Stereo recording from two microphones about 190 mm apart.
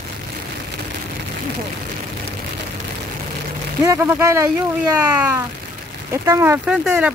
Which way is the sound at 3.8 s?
15° right (ahead or behind).